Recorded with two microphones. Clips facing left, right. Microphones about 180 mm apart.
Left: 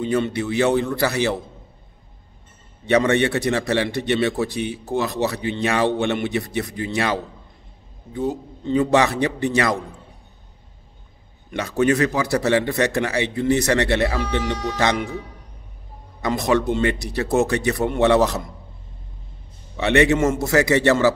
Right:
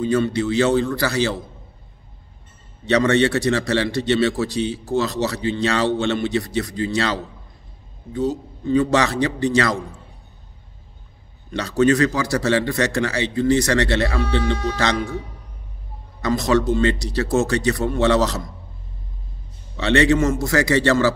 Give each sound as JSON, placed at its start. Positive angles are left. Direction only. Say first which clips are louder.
{"t": 0.0, "sound": "a man's voice", "louder": "right 2 dB", "side_deg": 20}
{"t": 2.9, "sound": "a man's voice", "louder": "right 1 dB", "side_deg": 15}
{"t": 8.6, "sound": "a man's voice", "louder": "even", "side_deg": 20}
{"t": 11.5, "sound": "a man's voice", "louder": "right 2 dB", "side_deg": 20}
{"t": 16.5, "sound": "a man's voice", "louder": "right 4 dB", "side_deg": 15}
{"t": 19.8, "sound": "a man's voice", "louder": "even", "side_deg": 20}